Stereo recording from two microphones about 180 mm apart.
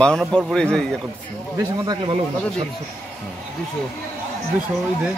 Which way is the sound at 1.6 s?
20° right (ahead or behind).